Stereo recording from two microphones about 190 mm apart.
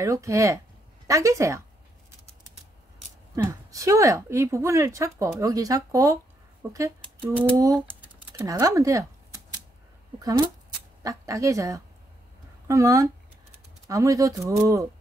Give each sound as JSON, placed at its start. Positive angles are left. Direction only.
{"t": 0.0, "sound": "speech", "side_deg": -15}
{"t": 3.7, "sound": "speech", "side_deg": -15}
{"t": 8.0, "sound": "typing", "side_deg": -15}
{"t": 10.1, "sound": "speech", "side_deg": -20}